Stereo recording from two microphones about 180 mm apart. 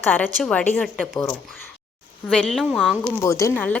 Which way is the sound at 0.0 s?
10° left (ahead or behind).